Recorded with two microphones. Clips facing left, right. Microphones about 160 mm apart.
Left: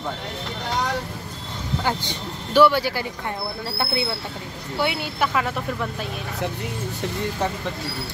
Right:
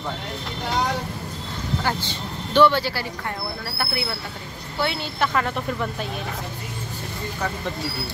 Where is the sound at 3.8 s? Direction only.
25° left (ahead or behind).